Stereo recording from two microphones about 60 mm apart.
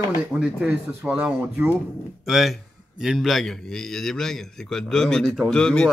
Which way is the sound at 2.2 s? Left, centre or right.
Centre.